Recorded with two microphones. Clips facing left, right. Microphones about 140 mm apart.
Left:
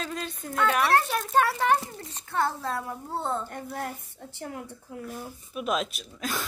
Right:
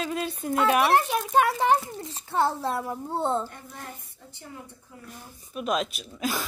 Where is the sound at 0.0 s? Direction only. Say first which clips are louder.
Right 5 dB; 10° right (ahead or behind).